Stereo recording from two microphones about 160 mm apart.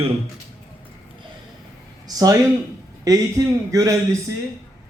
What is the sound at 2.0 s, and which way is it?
A man's voice, 25° right (ahead or behind).